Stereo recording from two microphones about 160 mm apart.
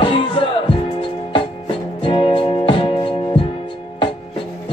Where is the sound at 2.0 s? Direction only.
30° left (ahead or behind).